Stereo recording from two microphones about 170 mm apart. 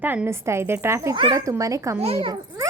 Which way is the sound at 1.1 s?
30° right (ahead or behind).